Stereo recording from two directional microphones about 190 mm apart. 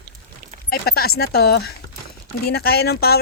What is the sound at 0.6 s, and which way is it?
Speech, 55° left (ahead or behind).